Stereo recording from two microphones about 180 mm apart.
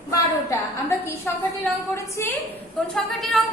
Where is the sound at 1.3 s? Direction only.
10° left (ahead or behind).